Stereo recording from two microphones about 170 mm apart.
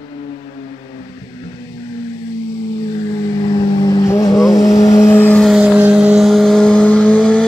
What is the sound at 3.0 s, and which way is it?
Vehicle, 20° left (ahead or behind).